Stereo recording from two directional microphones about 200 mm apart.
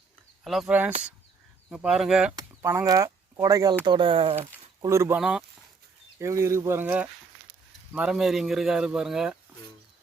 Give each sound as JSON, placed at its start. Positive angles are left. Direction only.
{"t": 0.4, "sound": "speech", "side_deg": 0}
{"t": 2.3, "sound": "speech", "side_deg": -15}
{"t": 4.4, "sound": "speech", "side_deg": -15}